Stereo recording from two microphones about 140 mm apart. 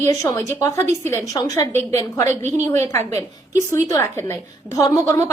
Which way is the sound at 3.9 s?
20° left (ahead or behind).